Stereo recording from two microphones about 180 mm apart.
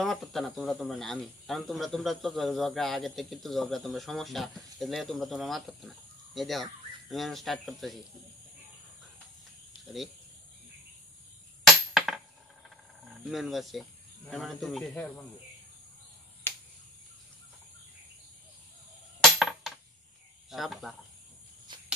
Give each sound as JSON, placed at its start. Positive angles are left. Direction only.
{"t": 0.0, "sound": "speech", "side_deg": 0}
{"t": 12.0, "sound": "a sound", "side_deg": 0}
{"t": 13.2, "sound": "speech", "side_deg": 0}
{"t": 19.3, "sound": "coin", "side_deg": 0}
{"t": 20.4, "sound": "speech", "side_deg": 0}
{"t": 21.7, "sound": "a sound", "side_deg": -25}